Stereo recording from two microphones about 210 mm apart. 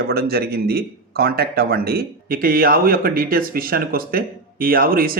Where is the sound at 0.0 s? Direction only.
45° right (ahead or behind).